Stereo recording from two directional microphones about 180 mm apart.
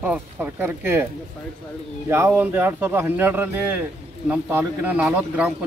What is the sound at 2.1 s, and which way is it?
Speech, 10° right (ahead or behind).